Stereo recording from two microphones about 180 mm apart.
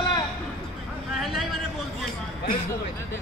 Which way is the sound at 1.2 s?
Centre (ahead or behind).